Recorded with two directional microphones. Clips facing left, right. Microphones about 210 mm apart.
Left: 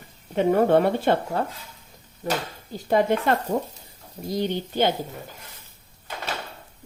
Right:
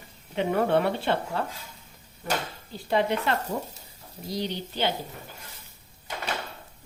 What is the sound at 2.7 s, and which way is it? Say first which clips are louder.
Speech: left 4 dB; 45° left (ahead or behind).